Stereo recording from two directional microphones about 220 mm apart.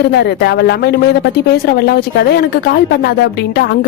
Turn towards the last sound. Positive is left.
turn(degrees=50)  # may be behind; listen again after turning